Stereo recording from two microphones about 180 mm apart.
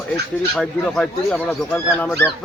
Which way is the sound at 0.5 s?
5° left (ahead or behind).